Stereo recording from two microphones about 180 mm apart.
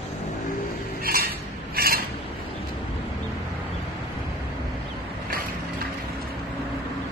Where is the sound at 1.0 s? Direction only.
55° right (ahead or behind).